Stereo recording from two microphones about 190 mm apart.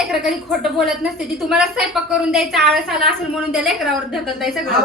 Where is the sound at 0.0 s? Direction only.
Centre (ahead or behind).